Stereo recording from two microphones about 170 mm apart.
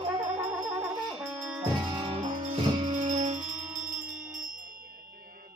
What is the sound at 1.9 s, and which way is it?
Music, 25° right (ahead or behind).